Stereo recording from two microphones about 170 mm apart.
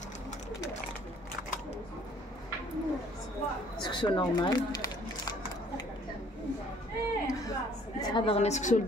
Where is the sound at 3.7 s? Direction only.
25° left (ahead or behind).